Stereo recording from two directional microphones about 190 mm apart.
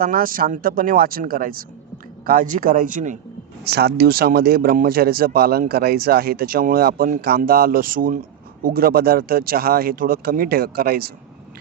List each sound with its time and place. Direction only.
0.0 s speech: 50° right (ahead or behind)
3.6 s speech: 60° right (ahead or behind)